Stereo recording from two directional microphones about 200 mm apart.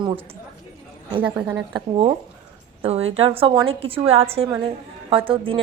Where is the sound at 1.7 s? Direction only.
25° right (ahead or behind).